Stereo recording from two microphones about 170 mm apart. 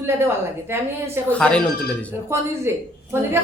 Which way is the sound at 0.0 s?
15° right (ahead or behind).